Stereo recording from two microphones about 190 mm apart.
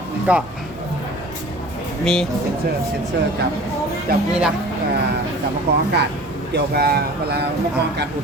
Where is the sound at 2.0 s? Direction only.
5° left (ahead or behind).